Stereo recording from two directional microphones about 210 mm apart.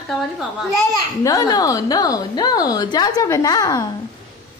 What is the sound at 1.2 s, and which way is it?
A woman's voice, 15° left (ahead or behind).